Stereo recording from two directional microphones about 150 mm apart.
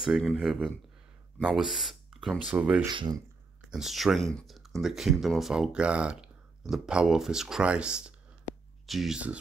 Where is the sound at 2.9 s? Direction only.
30° right (ahead or behind).